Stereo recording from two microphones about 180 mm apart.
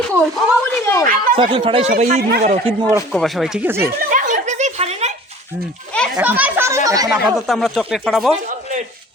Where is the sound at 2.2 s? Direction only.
60° right (ahead or behind).